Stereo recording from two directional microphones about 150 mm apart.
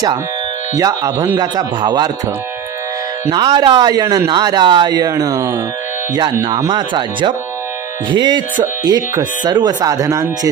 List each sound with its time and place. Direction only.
0.7 s speech: 25° right (ahead or behind)
3.3 s speech: 30° right (ahead or behind)
6.7 s speech: 30° right (ahead or behind)